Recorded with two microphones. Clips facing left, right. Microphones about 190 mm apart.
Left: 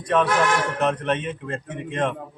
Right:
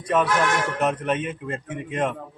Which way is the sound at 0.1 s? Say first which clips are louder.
Left 1 dB; 5° right (ahead or behind).